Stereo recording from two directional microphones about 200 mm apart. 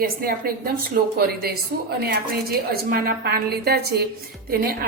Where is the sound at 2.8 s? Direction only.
50° right (ahead or behind).